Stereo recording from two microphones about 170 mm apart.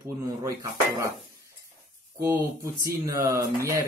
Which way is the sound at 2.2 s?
15° right (ahead or behind).